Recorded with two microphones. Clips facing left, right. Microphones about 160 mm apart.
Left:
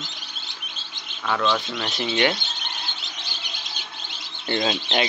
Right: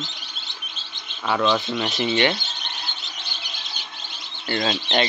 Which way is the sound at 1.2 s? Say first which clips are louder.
Right 2 dB; 15° right (ahead or behind).